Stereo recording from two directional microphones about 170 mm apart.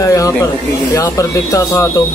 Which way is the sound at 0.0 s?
20° left (ahead or behind).